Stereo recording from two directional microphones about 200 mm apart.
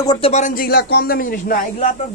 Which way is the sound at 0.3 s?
40° left (ahead or behind).